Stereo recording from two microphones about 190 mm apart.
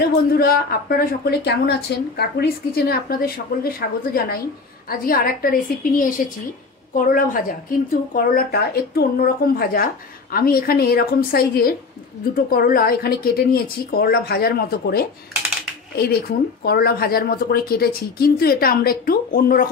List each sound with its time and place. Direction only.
0.4 s a woman's voice: 55° left (ahead or behind)